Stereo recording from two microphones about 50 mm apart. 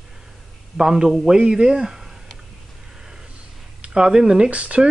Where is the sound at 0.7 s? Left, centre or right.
Centre.